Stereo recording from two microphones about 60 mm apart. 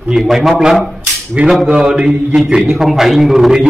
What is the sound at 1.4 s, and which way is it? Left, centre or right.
A man's voice, centre.